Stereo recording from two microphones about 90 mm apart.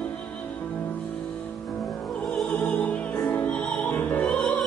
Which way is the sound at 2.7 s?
15° left (ahead or behind).